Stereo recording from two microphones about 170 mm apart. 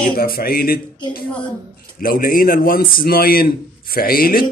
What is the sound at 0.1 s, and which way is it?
A man's voice, 65° left (ahead or behind).